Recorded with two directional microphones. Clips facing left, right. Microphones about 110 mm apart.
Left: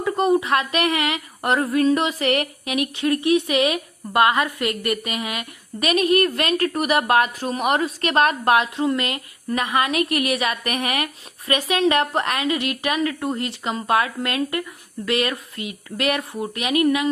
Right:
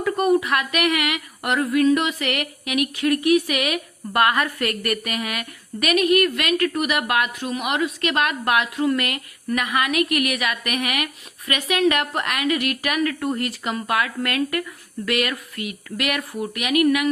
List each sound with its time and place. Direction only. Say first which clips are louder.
0.0 s speech: even; 25° left (ahead or behind)